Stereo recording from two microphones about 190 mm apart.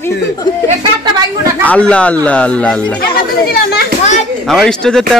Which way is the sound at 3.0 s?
55° left (ahead or behind).